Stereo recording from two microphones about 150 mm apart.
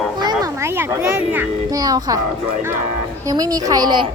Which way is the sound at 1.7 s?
25° right (ahead or behind).